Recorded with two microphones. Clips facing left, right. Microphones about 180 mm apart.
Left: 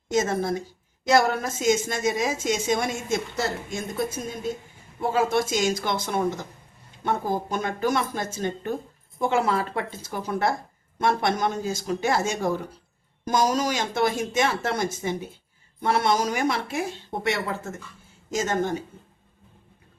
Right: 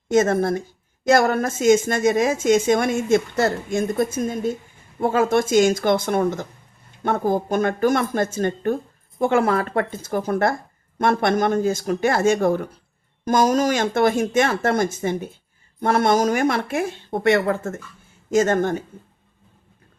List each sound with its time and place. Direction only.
0.1 s speech: 55° right (ahead or behind)